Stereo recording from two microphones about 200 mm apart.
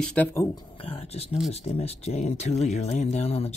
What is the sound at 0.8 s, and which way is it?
Speech, 30° left (ahead or behind).